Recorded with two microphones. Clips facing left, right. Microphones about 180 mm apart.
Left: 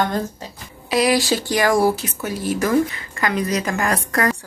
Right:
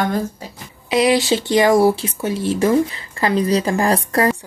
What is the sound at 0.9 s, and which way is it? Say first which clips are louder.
Speech: right 2 dB; 20° right (ahead or behind).